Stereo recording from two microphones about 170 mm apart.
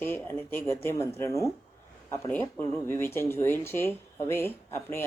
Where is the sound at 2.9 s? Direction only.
15° left (ahead or behind).